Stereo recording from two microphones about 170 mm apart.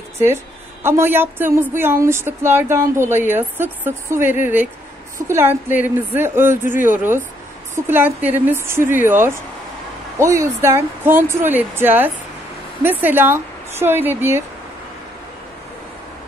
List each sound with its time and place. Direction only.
0.8 s speech: 15° right (ahead or behind)
5.3 s speech: 15° right (ahead or behind)